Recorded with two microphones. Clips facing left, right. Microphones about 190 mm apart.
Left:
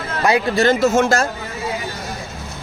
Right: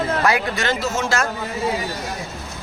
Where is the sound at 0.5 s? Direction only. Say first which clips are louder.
Left 8 dB; 45° left (ahead or behind).